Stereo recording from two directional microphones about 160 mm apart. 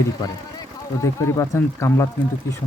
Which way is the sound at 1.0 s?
20° left (ahead or behind).